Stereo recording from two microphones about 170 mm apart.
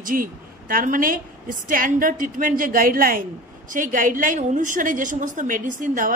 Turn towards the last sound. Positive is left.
turn(degrees=-50)  # may be behind; listen again after turning